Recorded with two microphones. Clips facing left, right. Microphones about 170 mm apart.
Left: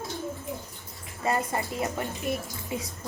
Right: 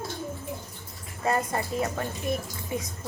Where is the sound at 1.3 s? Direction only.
15° left (ahead or behind).